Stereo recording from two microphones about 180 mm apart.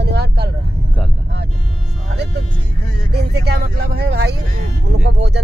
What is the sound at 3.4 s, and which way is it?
Speech, 60° right (ahead or behind).